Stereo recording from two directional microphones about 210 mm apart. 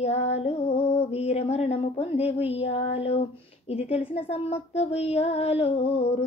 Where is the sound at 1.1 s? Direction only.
30° left (ahead or behind).